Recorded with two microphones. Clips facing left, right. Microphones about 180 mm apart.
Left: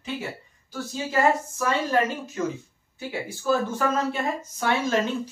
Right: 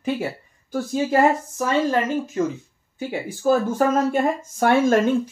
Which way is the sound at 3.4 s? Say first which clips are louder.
Right 5 dB; 45° right (ahead or behind).